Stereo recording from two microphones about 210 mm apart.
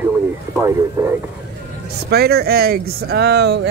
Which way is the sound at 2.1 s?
50° right (ahead or behind).